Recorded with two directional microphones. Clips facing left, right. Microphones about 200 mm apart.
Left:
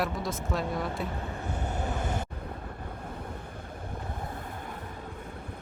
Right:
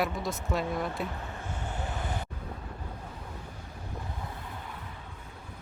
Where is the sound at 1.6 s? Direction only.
45° left (ahead or behind).